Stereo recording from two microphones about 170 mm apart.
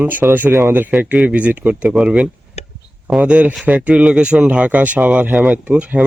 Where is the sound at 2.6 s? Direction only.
40° left (ahead or behind).